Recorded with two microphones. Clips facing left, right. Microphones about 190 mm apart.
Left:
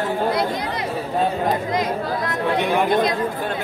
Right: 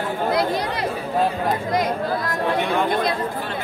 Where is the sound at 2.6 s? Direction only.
15° left (ahead or behind).